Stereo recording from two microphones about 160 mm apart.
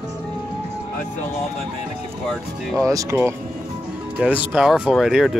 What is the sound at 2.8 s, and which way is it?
Speech, 20° right (ahead or behind).